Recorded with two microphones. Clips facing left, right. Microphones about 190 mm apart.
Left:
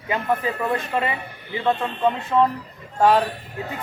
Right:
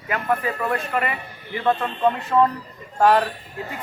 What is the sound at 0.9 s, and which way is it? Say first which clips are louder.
Speech: left 1 dB; 25° left (ahead or behind).